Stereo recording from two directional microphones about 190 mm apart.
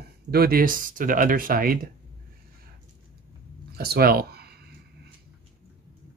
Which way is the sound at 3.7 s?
55° right (ahead or behind).